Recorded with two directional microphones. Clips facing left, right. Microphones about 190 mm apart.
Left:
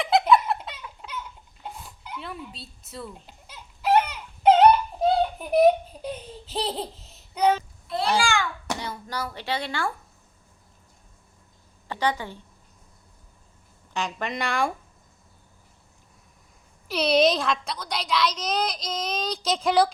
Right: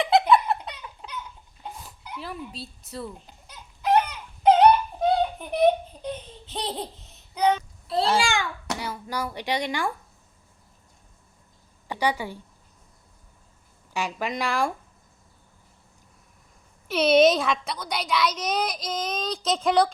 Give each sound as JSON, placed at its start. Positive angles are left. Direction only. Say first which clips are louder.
{"t": 0.0, "sound": "giggle", "louder": "even", "side_deg": 0}
{"t": 1.6, "sound": "a sound", "louder": "even", "side_deg": 0}
{"t": 4.9, "sound": "a child's voice", "louder": "left 1 dB", "side_deg": 0}
{"t": 7.3, "sound": "child singing", "louder": "left 1 dB", "side_deg": 5}
{"t": 8.2, "sound": "a child's voice", "louder": "left 1 dB", "side_deg": -20}
{"t": 11.9, "sound": "a woman's voice", "louder": "right 1 dB", "side_deg": -10}
{"t": 13.9, "sound": "a woman's voice", "louder": "right 1 dB", "side_deg": -5}
{"t": 16.9, "sound": "a woman's voice", "louder": "right 3 dB", "side_deg": -5}